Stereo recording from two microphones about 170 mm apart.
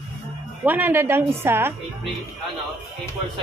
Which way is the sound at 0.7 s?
10° right (ahead or behind).